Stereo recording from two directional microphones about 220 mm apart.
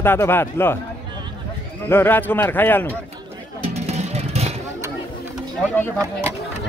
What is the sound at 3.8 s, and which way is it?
Music, 30° right (ahead or behind).